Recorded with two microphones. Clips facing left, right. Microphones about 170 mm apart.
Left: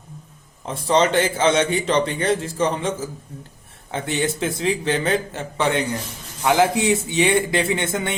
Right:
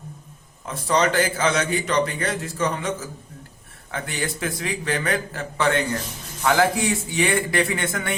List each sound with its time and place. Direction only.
0.6 s a man's voice: 25° left (ahead or behind)
3.9 s a man's voice: 25° left (ahead or behind)